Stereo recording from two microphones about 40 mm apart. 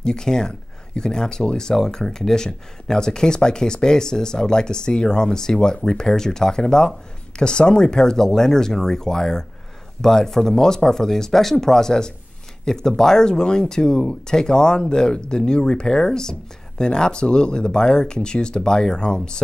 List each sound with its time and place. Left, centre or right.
0.0 s speech: centre